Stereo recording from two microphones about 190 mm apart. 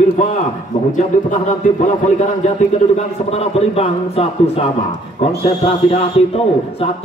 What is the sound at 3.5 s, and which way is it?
Speech, 30° left (ahead or behind).